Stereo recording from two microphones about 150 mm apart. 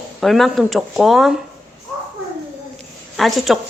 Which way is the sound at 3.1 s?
Centre (ahead or behind).